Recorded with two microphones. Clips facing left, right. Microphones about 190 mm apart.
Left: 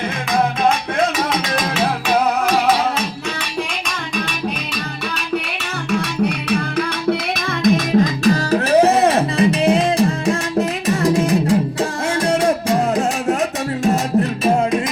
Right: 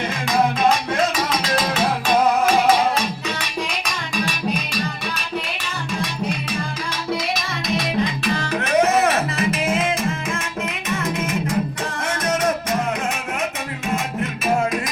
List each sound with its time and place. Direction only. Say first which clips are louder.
6.0 s music: left 3 dB; 65° left (ahead or behind); by 14.8 s 35° left (ahead or behind)